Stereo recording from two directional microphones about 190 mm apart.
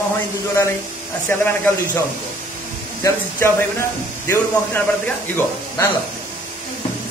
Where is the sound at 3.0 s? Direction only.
15° left (ahead or behind).